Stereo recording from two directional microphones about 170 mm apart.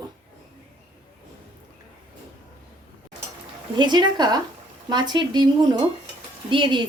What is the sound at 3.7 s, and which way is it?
A woman's voice, 25° right (ahead or behind).